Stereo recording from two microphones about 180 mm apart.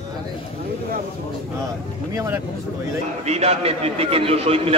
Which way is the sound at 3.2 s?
35° right (ahead or behind).